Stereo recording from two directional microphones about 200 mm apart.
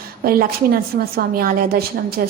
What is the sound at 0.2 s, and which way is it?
A woman's voice, 50° right (ahead or behind).